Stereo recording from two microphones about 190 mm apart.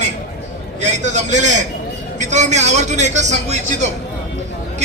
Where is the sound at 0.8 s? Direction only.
40° right (ahead or behind).